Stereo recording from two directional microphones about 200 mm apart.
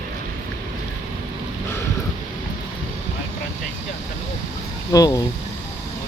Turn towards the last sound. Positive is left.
turn(degrees=15)  # may be behind; listen again after turning